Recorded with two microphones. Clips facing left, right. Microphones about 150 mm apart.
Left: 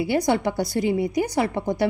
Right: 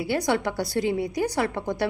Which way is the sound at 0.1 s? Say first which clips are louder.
Left 1 dB; 15° left (ahead or behind).